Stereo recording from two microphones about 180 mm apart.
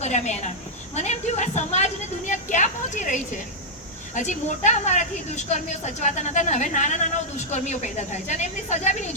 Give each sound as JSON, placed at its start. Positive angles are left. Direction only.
{"t": 0.0, "sound": "a woman's voice", "side_deg": 40}
{"t": 0.9, "sound": "a sound", "side_deg": 40}
{"t": 4.1, "sound": "a woman's voice", "side_deg": 40}